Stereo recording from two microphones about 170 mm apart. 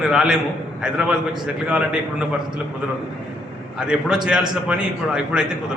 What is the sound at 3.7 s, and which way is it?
A man's voice, 5° right (ahead or behind).